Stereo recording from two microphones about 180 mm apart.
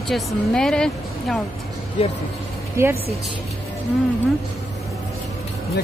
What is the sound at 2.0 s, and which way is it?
Speech, 35° left (ahead or behind).